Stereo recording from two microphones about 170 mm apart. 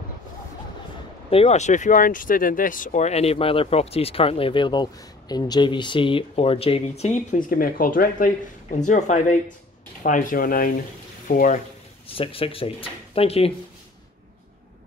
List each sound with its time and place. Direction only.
1.3 s speech: 40° left (ahead or behind)
12.1 s speech: 35° left (ahead or behind)